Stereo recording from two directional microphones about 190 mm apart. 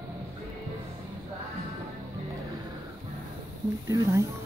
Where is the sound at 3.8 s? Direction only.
15° right (ahead or behind).